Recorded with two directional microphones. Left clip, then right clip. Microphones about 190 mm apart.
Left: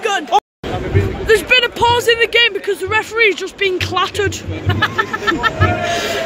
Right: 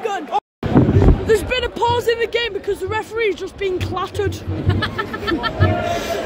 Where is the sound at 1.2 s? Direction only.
10° right (ahead or behind).